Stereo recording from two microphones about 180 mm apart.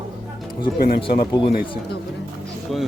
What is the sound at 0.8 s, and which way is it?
Speech, 55° left (ahead or behind).